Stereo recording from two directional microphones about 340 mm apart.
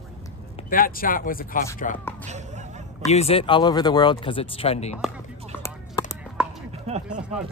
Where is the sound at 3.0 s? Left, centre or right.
Centre.